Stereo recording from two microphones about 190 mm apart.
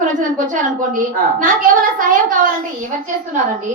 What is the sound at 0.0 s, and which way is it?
A woman's voice, 45° right (ahead or behind).